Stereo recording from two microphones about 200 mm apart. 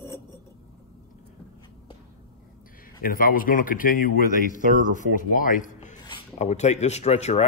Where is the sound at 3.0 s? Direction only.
45° left (ahead or behind).